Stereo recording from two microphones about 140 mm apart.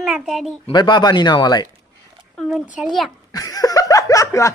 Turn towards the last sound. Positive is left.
turn(degrees=20)  # may be behind; listen again after turning